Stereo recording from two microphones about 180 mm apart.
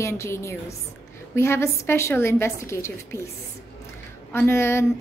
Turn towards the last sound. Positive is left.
turn(degrees=15)  # may be behind; listen again after turning